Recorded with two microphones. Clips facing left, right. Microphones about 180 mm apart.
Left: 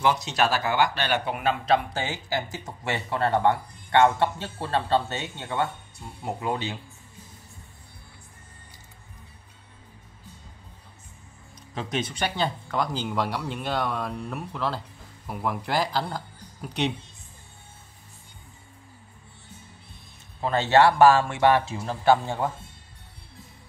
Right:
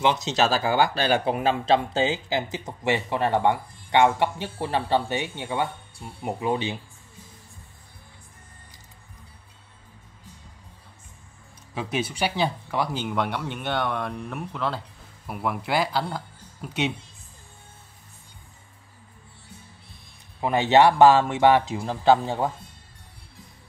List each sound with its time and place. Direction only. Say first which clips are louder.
0.0 s speech: right 1 dB; 25° right (ahead or behind)
11.7 s speech: right 2 dB; 10° right (ahead or behind)
20.3 s speech: right 2 dB; 15° right (ahead or behind)